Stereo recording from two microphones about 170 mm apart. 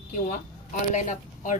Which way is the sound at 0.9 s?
45° left (ahead or behind).